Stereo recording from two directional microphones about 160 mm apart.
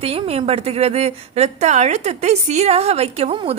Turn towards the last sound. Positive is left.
turn(degrees=-40)  # may be behind; listen again after turning